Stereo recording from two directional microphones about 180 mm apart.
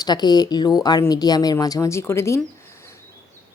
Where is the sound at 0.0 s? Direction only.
25° left (ahead or behind).